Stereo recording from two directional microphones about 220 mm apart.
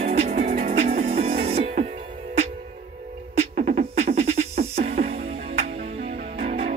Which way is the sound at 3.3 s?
35° right (ahead or behind).